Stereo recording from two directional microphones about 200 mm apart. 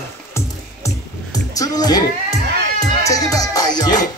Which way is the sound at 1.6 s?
20° left (ahead or behind).